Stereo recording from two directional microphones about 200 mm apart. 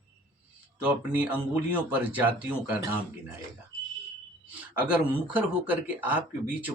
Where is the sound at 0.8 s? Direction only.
5° right (ahead or behind).